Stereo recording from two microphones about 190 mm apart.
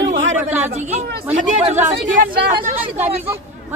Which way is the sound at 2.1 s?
45° right (ahead or behind).